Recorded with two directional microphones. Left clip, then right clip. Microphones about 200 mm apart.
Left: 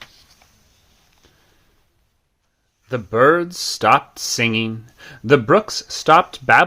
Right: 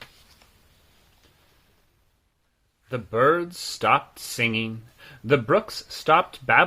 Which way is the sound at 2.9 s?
45° left (ahead or behind).